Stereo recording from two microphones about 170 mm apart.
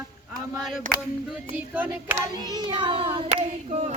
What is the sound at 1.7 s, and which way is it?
Hands, 10° right (ahead or behind).